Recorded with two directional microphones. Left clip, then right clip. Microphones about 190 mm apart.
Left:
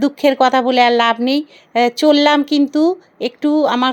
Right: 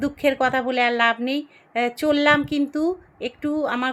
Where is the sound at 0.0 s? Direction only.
40° left (ahead or behind).